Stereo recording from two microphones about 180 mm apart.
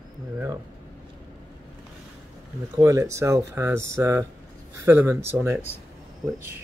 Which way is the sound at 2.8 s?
15° right (ahead or behind).